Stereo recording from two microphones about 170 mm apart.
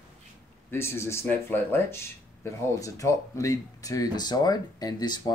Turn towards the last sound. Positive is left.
turn(degrees=25)  # may be behind; listen again after turning